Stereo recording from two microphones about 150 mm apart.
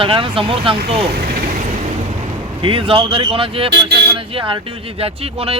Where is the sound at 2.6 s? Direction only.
35° right (ahead or behind).